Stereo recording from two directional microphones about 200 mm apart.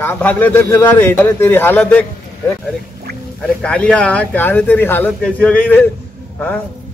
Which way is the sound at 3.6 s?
5° left (ahead or behind).